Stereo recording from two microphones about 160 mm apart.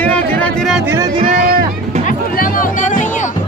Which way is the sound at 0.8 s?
20° right (ahead or behind).